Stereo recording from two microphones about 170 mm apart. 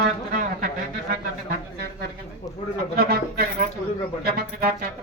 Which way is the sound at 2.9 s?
60° right (ahead or behind).